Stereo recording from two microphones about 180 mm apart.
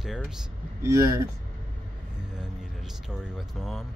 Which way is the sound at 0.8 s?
15° right (ahead or behind).